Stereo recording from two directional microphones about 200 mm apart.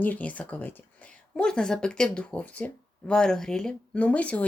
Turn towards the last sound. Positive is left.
turn(degrees=5)  # may be behind; listen again after turning